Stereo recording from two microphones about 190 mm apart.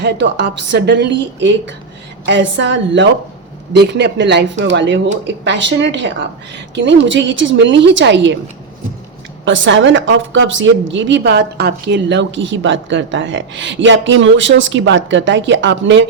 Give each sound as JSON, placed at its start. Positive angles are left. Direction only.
{"t": 0.0, "sound": "a woman's voice", "side_deg": -65}
{"t": 9.4, "sound": "a woman's voice", "side_deg": -80}